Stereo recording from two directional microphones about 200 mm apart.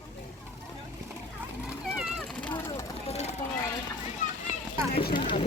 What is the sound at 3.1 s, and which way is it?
Vehicle, 30° left (ahead or behind).